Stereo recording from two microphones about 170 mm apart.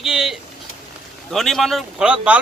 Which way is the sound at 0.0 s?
Centre (ahead or behind).